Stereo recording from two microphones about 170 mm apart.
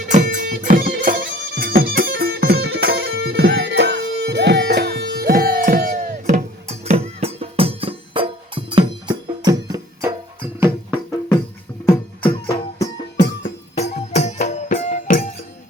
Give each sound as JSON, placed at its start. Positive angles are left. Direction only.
{"t": 0.1, "sound": "music", "side_deg": -45}
{"t": 6.3, "sound": "music", "side_deg": -40}
{"t": 13.1, "sound": "music", "side_deg": 45}